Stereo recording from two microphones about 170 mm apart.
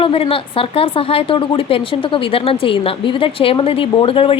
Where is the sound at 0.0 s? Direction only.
35° left (ahead or behind).